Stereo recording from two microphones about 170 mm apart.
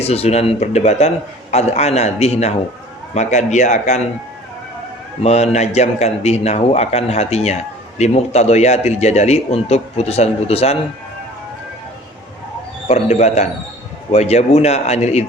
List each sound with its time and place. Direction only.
0.0 s a man's voice: 35° left (ahead or behind)
5.2 s a man's voice: 40° left (ahead or behind)
12.9 s a man's voice: 40° left (ahead or behind)